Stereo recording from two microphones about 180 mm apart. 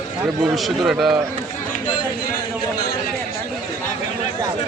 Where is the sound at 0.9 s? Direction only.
5° right (ahead or behind).